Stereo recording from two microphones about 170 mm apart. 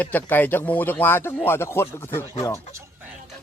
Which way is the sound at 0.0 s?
10° left (ahead or behind).